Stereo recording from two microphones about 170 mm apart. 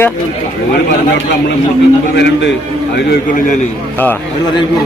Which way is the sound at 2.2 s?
90° left.